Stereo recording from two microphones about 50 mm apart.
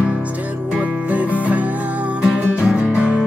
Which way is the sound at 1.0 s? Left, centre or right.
Right.